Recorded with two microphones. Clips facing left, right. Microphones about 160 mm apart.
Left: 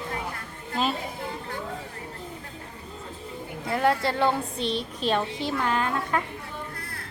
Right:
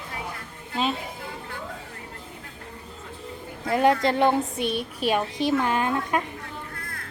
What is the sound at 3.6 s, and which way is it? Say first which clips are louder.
A woman's voice: right 4 dB; 20° right (ahead or behind).